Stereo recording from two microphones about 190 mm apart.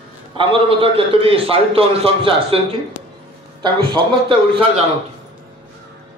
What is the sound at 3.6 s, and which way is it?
A man's voice, 25° right (ahead or behind).